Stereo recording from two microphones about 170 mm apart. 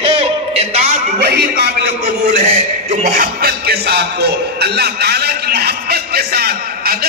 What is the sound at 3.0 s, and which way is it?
A man's voice, 55° right (ahead or behind).